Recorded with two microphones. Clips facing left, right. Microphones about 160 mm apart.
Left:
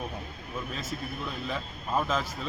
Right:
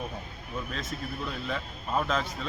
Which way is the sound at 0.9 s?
5° left (ahead or behind).